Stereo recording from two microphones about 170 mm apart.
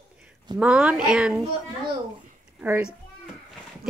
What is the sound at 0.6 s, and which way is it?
Speech, 5° right (ahead or behind).